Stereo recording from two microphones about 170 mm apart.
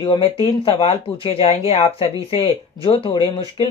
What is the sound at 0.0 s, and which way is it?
Speech, 30° left (ahead or behind).